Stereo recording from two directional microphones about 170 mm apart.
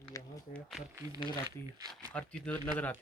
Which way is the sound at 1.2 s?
25° left (ahead or behind).